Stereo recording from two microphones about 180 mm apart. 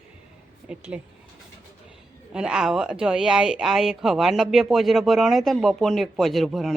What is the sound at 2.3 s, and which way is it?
Speech, 5° right (ahead or behind).